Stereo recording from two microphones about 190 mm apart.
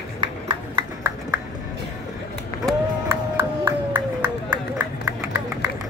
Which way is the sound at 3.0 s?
10° right (ahead or behind).